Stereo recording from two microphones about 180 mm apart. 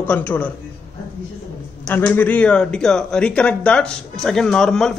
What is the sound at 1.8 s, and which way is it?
Speech, 10° left (ahead or behind).